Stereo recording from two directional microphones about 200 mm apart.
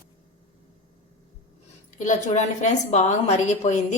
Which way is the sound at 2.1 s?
35° left (ahead or behind).